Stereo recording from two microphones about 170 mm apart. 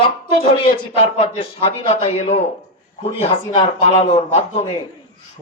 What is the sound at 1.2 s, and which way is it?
A man's voice, 35° left (ahead or behind).